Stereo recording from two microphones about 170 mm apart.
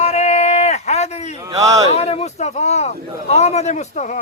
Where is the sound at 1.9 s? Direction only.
35° left (ahead or behind).